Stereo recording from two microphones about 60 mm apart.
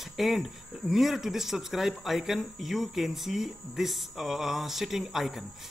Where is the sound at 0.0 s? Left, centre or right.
Centre.